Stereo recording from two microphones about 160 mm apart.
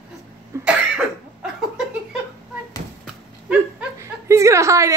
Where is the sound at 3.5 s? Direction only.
15° right (ahead or behind).